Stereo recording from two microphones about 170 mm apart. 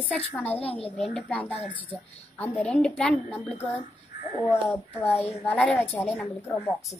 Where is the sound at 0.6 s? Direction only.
35° left (ahead or behind).